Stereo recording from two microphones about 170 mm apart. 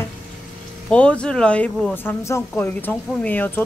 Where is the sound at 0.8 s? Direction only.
5° left (ahead or behind).